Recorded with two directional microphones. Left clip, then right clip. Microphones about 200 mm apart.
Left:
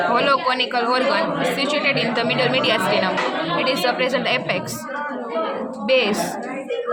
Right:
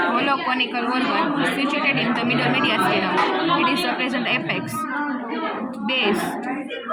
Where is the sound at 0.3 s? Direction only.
60° left (ahead or behind).